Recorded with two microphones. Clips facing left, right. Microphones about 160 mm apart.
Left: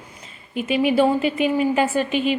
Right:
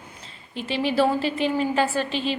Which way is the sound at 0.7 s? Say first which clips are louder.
Left 6 dB; 30° right (ahead or behind).